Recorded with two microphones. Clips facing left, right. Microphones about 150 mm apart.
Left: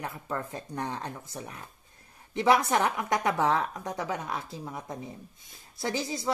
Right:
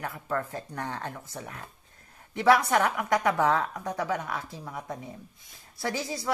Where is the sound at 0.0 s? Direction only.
20° left (ahead or behind).